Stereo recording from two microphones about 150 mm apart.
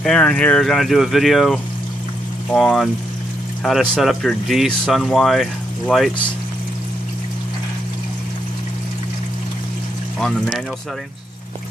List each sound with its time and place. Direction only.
0.0 s speech: 5° left (ahead or behind)
10.1 s speech: 5° left (ahead or behind)